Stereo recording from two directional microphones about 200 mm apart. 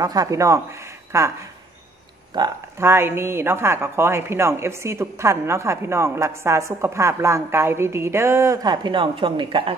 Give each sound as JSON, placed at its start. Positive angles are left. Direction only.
{"t": 0.0, "sound": "speech", "side_deg": -20}
{"t": 2.3, "sound": "a woman's voice", "side_deg": -15}